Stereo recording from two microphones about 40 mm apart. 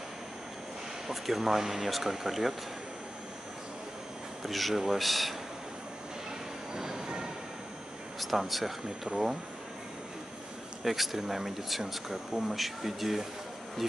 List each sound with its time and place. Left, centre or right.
1.0 s speech: centre
4.4 s speech: centre
6.7 s train: centre
8.2 s speech: centre
10.8 s speech: centre